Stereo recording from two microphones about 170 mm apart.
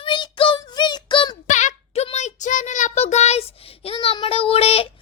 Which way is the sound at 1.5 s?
45° left (ahead or behind).